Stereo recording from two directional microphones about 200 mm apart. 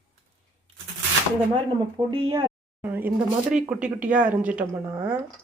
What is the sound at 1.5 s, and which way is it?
Speech, 25° right (ahead or behind).